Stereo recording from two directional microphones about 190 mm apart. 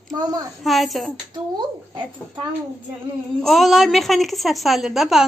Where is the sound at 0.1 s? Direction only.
20° right (ahead or behind).